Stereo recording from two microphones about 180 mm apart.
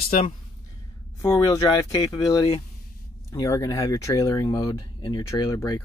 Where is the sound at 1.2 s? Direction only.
20° left (ahead or behind).